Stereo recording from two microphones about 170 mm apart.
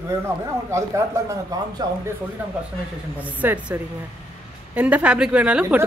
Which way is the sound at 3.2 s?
10° right (ahead or behind).